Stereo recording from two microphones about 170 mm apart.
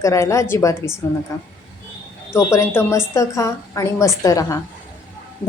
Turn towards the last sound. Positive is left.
turn(degrees=20)  # may be behind; listen again after turning